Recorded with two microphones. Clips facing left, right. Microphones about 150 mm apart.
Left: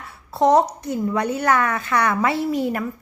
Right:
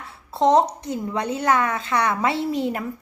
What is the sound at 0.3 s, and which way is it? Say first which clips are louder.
A woman's voice: left 1 dB; 20° right (ahead or behind).